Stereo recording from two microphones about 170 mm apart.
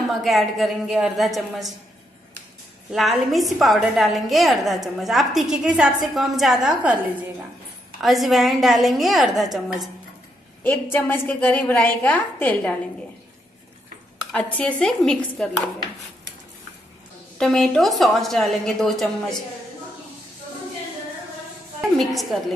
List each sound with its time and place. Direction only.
0.1 s a woman's voice: centre (ahead or behind)
2.9 s a woman's voice: centre (ahead or behind)
8.0 s a woman's voice: centre (ahead or behind)
10.6 s a woman's voice: 10° left (ahead or behind)
14.3 s a woman's voice: 10° left (ahead or behind)
17.4 s a woman's voice: centre (ahead or behind)
21.9 s a woman's voice: centre (ahead or behind)